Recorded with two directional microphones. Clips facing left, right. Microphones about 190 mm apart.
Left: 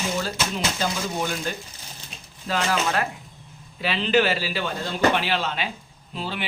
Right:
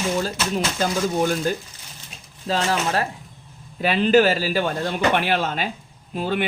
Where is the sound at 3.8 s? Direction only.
50° right (ahead or behind).